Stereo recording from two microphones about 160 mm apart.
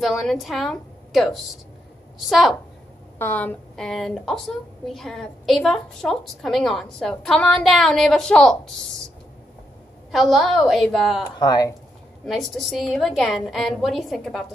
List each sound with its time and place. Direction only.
0.0 s a woman's voice: centre (ahead or behind)
3.2 s a woman's voice: 10° left (ahead or behind)
10.1 s a woman's voice: centre (ahead or behind)
11.3 s speech: 25° left (ahead or behind)
12.3 s a woman's voice: centre (ahead or behind)